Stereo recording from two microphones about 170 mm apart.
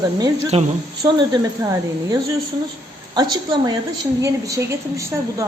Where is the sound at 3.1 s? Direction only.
25° right (ahead or behind).